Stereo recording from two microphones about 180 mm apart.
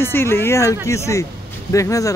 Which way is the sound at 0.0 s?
15° left (ahead or behind).